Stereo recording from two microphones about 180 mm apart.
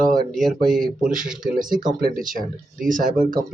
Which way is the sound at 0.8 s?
50° right (ahead or behind).